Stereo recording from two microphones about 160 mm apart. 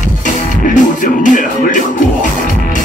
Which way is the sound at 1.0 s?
55° left (ahead or behind).